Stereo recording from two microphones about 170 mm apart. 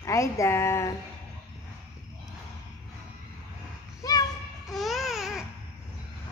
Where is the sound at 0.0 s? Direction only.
15° left (ahead or behind).